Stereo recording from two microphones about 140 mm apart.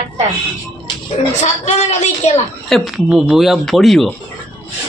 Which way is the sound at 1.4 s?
55° left (ahead or behind).